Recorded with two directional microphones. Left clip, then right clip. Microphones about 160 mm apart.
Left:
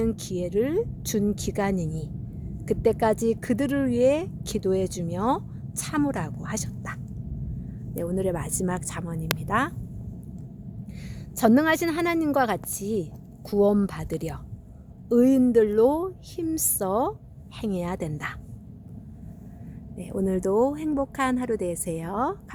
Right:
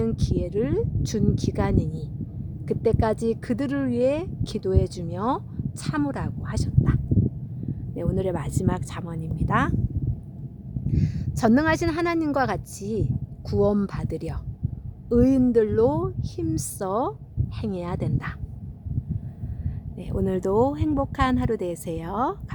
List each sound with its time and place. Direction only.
0.0 s speech: 15° left (ahead or behind)
7.9 s speech: centre (ahead or behind)
10.8 s speech: 10° left (ahead or behind)
20.0 s speech: 5° right (ahead or behind)